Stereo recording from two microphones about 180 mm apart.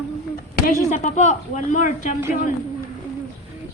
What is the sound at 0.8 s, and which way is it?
Speech, 40° left (ahead or behind).